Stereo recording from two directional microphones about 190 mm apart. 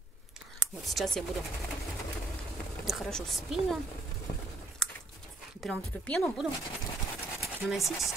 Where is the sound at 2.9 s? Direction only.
Centre (ahead or behind).